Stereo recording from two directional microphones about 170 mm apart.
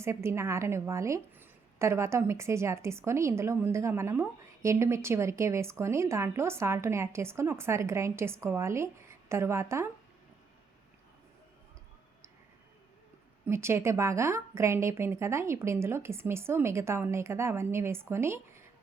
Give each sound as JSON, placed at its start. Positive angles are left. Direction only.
{"t": 0.0, "sound": "a woman's voice", "side_deg": -15}
{"t": 13.5, "sound": "a woman's voice", "side_deg": -15}